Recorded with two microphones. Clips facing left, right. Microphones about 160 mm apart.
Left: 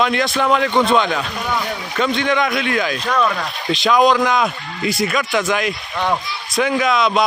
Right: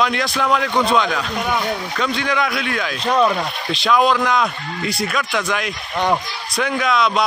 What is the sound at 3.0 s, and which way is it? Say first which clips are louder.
Speech: right 4 dB; 25° right (ahead or behind).